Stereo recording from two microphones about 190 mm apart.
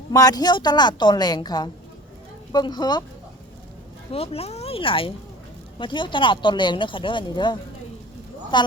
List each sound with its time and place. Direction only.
0.1 s speech: 20° left (ahead or behind)
4.1 s speech: 30° left (ahead or behind)